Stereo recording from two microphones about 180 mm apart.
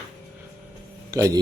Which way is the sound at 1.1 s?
20° right (ahead or behind).